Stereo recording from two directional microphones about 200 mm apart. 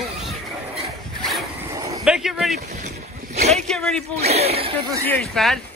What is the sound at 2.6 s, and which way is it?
Boat, 35° right (ahead or behind).